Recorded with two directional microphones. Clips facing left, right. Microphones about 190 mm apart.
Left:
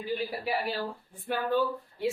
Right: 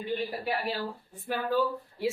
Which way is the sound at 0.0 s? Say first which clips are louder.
Even; 5° left (ahead or behind).